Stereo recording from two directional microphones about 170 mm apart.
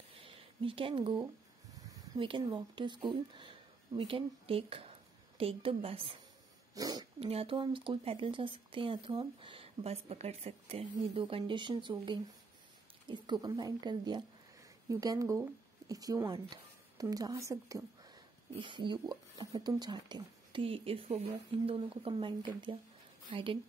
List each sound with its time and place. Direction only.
0.2 s a sound: 30° right (ahead or behind)
1.9 s speech: 30° right (ahead or behind)
6.7 s speech: 20° right (ahead or behind)
7.2 s speech: 35° right (ahead or behind)